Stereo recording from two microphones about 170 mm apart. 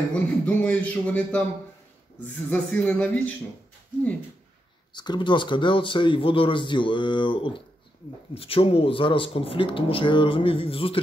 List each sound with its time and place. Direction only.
0.1 s a man's voice: 10° left (ahead or behind)
2.5 s a man's voice: 10° left (ahead or behind)
4.9 s a man's voice: 25° left (ahead or behind)